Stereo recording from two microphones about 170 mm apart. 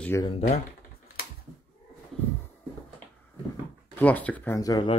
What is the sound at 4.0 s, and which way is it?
Speech, 10° left (ahead or behind).